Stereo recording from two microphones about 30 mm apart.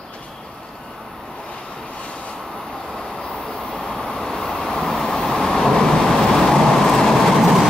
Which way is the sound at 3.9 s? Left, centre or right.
Left.